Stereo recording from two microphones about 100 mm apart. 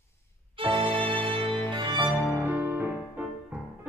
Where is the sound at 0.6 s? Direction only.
60° right (ahead or behind).